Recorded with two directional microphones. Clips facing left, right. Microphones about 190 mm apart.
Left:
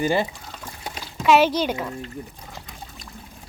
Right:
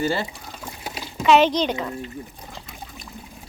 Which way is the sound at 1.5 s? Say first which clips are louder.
Right 1 dB; 5° left (ahead or behind).